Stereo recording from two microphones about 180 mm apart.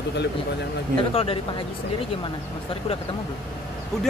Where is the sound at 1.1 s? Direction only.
30° left (ahead or behind).